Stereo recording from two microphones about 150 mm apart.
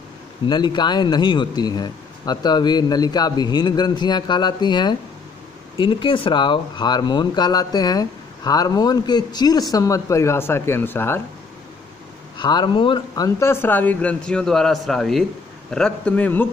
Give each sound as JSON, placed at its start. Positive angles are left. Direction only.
{"t": 0.5, "sound": "speech", "side_deg": 30}
{"t": 12.4, "sound": "speech", "side_deg": 30}